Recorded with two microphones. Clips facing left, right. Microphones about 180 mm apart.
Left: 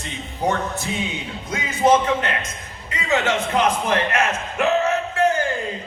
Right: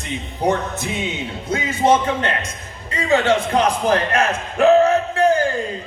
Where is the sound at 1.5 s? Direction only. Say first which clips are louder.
Right 1 dB; 30° right (ahead or behind).